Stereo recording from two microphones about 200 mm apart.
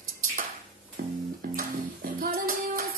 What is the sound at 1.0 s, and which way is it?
Music, 50° right (ahead or behind).